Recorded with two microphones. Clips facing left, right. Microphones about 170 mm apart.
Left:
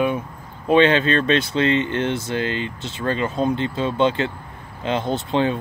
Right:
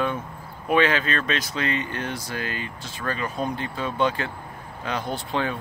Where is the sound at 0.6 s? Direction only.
25° left (ahead or behind).